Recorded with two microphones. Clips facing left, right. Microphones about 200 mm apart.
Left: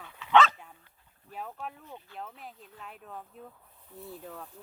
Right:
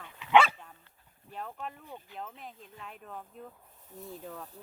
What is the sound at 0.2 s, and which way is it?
Dog, 10° right (ahead or behind).